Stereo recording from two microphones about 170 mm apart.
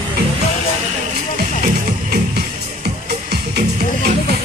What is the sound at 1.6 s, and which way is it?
Music, 65° right (ahead or behind).